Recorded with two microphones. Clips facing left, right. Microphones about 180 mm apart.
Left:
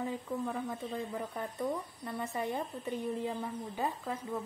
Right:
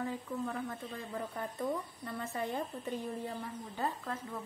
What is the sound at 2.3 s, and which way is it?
Speech, 15° left (ahead or behind).